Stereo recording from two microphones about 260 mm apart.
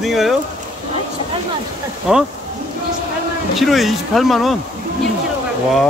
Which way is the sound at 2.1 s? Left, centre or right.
Centre.